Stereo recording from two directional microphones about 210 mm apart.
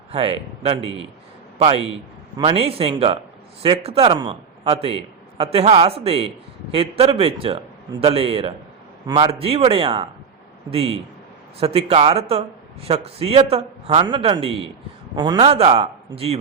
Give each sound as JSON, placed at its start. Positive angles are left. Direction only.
{"t": 0.1, "sound": "a man's voice", "side_deg": -25}